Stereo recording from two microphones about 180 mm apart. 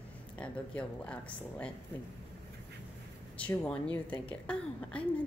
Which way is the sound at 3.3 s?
5° left (ahead or behind).